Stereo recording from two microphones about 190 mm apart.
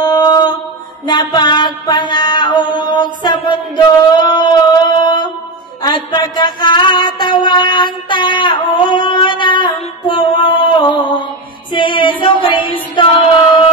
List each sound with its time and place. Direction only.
0.0 s mantra: 20° left (ahead or behind)
2.8 s chant: 25° left (ahead or behind)
5.8 s music: 20° left (ahead or behind)
12.2 s a sound: 25° left (ahead or behind)